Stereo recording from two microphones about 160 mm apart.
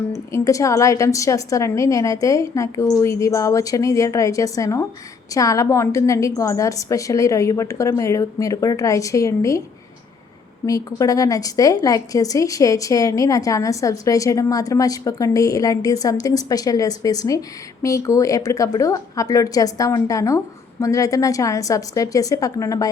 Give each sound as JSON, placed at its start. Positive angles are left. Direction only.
{"t": 0.1, "sound": "a woman's voice", "side_deg": 20}
{"t": 10.7, "sound": "a woman's voice", "side_deg": 20}